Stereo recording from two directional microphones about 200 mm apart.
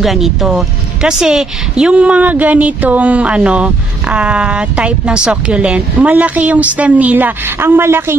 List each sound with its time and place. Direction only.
0.0 s speech: centre (ahead or behind)